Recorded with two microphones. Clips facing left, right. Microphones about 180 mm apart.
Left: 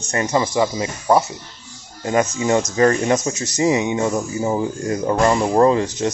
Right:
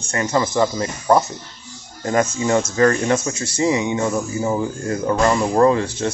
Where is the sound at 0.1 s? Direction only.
15° left (ahead or behind).